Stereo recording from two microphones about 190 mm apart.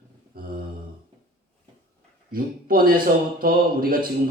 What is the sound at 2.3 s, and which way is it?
Speech, 50° right (ahead or behind).